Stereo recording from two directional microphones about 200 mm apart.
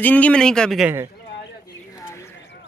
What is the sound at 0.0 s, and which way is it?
Speech, 5° left (ahead or behind).